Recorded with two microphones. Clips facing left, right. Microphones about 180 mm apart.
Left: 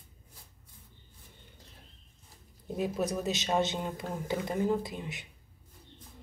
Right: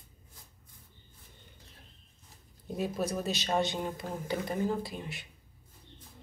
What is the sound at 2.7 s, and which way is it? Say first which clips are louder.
Speech: left 1 dB; 20° left (ahead or behind).